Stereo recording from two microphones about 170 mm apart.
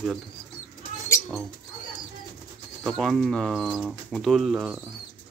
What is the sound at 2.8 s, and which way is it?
Speech, 5° left (ahead or behind).